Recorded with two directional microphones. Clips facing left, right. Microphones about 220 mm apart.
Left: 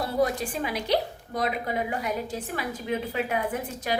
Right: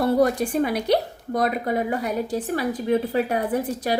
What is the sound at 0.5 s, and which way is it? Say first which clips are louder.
A woman's voice: right 6 dB; 55° right (ahead or behind).